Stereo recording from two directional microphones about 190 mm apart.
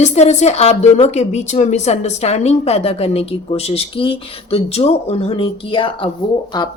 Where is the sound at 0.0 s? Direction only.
35° left (ahead or behind).